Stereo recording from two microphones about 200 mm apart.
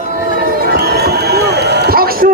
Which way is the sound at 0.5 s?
50° right (ahead or behind).